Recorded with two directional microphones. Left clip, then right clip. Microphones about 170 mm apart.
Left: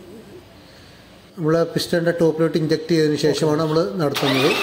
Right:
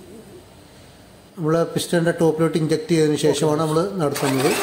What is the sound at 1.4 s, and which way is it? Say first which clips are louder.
A man's voice: left 1 dB; 5° left (ahead or behind).